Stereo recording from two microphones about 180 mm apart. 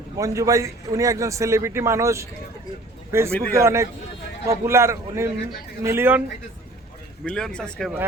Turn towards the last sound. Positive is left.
turn(degrees=5)  # may be behind; listen again after turning